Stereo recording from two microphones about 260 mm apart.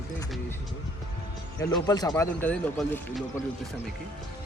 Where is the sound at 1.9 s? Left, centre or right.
Centre.